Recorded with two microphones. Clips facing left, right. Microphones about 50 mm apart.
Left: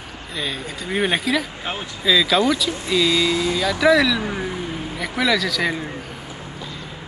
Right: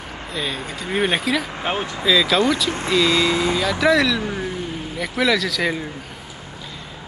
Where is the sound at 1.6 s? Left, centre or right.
Right.